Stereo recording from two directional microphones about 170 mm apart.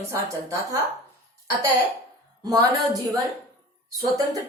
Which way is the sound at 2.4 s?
20° right (ahead or behind).